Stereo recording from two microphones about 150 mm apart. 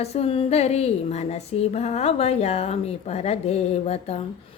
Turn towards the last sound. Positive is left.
turn(degrees=45)  # may be behind; listen again after turning